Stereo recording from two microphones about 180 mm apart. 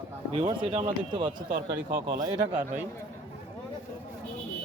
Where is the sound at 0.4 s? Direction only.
25° right (ahead or behind).